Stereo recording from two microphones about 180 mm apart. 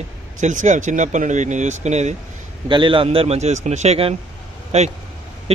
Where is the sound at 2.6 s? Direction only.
25° right (ahead or behind).